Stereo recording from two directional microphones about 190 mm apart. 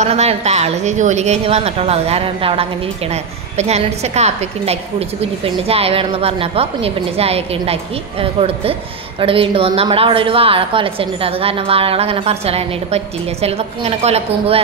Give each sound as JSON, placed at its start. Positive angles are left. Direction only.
{"t": 0.0, "sound": "a woman's voice", "side_deg": -35}